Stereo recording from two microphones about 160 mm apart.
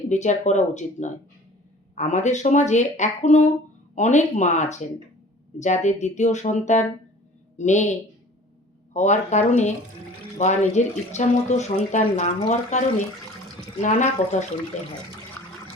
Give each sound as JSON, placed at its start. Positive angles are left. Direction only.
{"t": 0.1, "sound": "speech", "side_deg": 45}
{"t": 13.8, "sound": "speech", "side_deg": 50}